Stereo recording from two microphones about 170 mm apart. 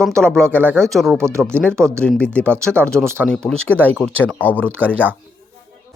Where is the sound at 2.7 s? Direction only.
15° right (ahead or behind).